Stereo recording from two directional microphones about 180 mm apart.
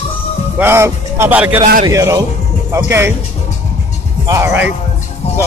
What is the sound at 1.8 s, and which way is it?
A man's voice, 20° right (ahead or behind).